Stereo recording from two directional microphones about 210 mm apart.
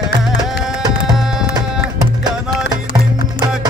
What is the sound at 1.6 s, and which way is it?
Music, 20° right (ahead or behind).